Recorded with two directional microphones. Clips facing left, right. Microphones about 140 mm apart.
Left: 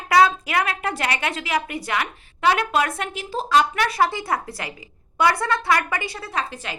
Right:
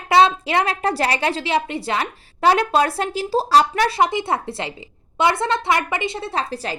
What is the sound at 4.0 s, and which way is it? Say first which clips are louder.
Speech: right 2 dB; 20° right (ahead or behind).